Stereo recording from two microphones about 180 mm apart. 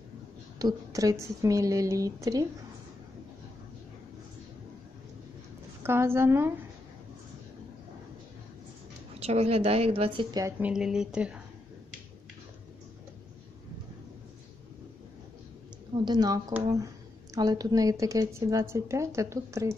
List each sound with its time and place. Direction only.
0.6 s a woman's voice: 20° right (ahead or behind)
5.8 s a woman's voice: 15° right (ahead or behind)
9.2 s a woman's voice: 35° right (ahead or behind)
10.4 s a woman's voice: 5° right (ahead or behind)
16.1 s a woman's voice: 20° right (ahead or behind)